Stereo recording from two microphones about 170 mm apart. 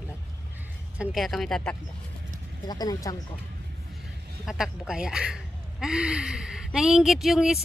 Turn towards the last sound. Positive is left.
turn(degrees=0)  # may be behind; listen again after turning